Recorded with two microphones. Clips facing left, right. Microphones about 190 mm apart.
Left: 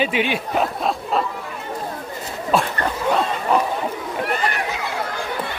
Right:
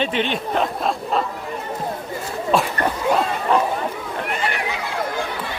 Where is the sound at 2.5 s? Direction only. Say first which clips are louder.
Even; centre (ahead or behind).